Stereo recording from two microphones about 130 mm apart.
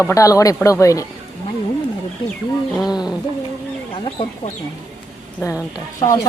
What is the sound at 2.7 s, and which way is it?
Bird, centre (ahead or behind).